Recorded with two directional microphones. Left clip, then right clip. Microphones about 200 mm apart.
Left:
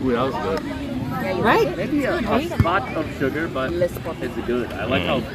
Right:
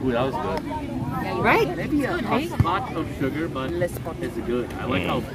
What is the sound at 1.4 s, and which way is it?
Speech, 20° left (ahead or behind).